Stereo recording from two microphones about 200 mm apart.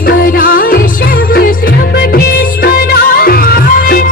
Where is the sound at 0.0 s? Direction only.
45° left (ahead or behind).